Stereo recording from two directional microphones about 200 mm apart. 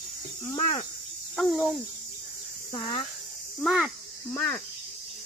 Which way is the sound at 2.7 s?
20° left (ahead or behind).